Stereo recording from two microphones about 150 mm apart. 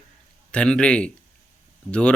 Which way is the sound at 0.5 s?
5° left (ahead or behind).